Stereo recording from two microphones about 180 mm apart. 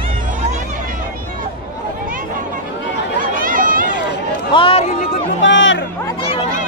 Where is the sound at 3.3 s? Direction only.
50° right (ahead or behind).